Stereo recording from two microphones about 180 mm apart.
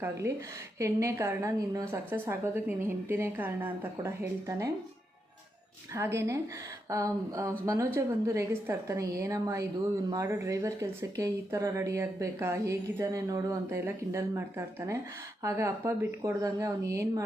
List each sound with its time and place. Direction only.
0.2 s speech: 15° right (ahead or behind)
5.9 s speech: 15° right (ahead or behind)